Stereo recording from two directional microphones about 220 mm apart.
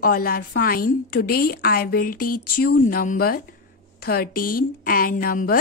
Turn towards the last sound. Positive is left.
turn(degrees=40)  # may be behind; listen again after turning